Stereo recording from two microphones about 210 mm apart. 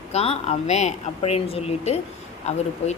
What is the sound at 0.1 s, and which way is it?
A woman's voice, 30° left (ahead or behind).